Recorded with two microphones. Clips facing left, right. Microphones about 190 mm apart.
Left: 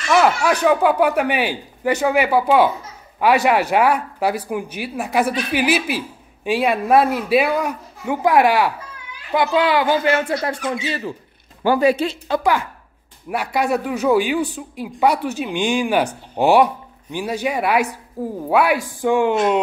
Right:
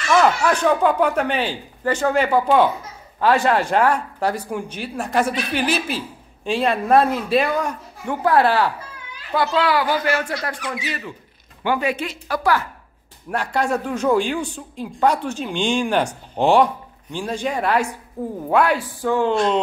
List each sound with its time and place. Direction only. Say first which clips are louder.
0.1 s a woman's voice: left 1 dB; 10° left (ahead or behind); by 12.2 s 35° left (ahead or behind)
12.3 s a woman's voice: even; 20° left (ahead or behind)